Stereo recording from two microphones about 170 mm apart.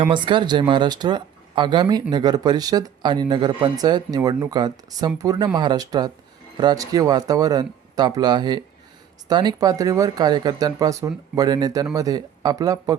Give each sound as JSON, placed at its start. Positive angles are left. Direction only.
{"t": 0.1, "sound": "speech", "side_deg": -30}